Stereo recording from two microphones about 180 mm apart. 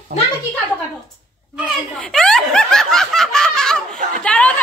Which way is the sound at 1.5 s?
5° left (ahead or behind).